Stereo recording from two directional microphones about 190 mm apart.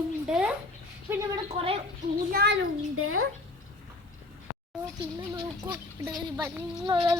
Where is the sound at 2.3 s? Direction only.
65° right (ahead or behind); by 3.3 s 90° right.